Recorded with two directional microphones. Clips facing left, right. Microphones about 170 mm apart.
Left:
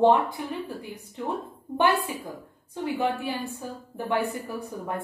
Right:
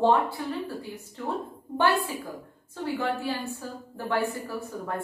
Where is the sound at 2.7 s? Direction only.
15° left (ahead or behind).